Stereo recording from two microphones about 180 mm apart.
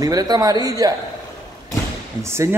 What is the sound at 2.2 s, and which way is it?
Speech, 15° right (ahead or behind).